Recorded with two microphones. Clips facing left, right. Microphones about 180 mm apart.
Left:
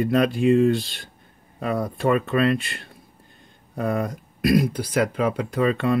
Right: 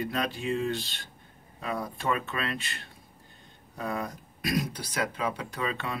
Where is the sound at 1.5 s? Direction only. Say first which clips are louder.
Left 8 dB; 70° left (ahead or behind); by 2.6 s 55° left (ahead or behind).